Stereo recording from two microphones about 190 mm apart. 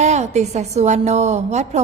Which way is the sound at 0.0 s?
35° right (ahead or behind).